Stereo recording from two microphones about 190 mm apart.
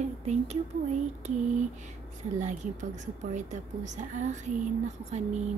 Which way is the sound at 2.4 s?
40° right (ahead or behind).